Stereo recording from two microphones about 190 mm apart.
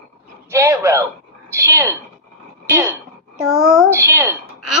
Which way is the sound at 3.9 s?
10° right (ahead or behind).